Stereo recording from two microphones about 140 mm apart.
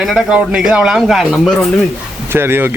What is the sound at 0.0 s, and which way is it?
Speech, 5° right (ahead or behind).